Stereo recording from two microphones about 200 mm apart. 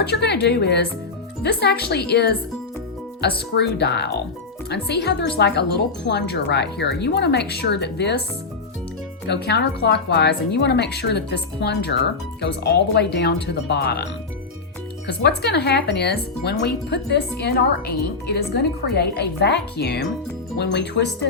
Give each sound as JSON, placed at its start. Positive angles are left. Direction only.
{"t": 0.0, "sound": "speech", "side_deg": 55}
{"t": 9.2, "sound": "speech", "side_deg": 55}